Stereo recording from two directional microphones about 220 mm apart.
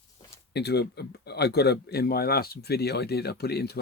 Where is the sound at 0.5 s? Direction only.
50° left (ahead or behind).